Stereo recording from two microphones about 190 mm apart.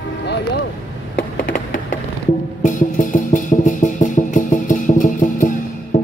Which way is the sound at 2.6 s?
45° left (ahead or behind).